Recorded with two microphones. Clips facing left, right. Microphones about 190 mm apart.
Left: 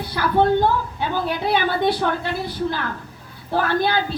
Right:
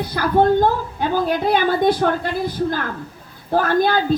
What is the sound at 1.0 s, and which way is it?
A woman's voice, 45° right (ahead or behind).